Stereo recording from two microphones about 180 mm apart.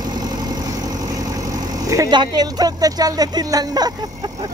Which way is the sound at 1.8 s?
20° right (ahead or behind).